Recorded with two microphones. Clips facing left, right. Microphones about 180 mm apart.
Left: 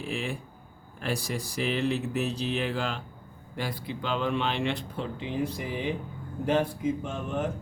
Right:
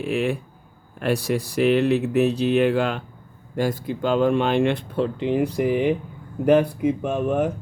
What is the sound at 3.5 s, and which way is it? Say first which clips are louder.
Speech: right 10 dB; 45° right (ahead or behind).